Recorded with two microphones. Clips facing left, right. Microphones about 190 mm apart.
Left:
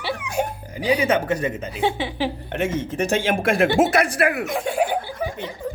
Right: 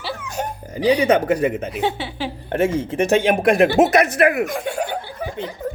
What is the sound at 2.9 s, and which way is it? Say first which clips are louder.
Speech: right 5 dB; 15° right (ahead or behind).